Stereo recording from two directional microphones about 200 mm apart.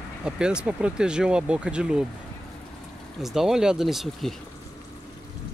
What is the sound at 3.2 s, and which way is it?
Speech, centre (ahead or behind).